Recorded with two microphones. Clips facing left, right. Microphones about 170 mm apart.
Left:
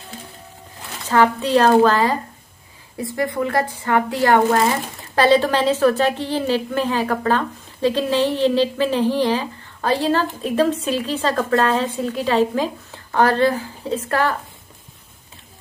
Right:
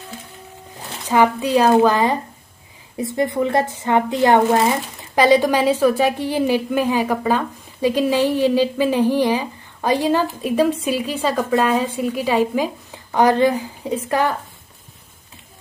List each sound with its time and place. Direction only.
1.0 s a woman's voice: 15° right (ahead or behind)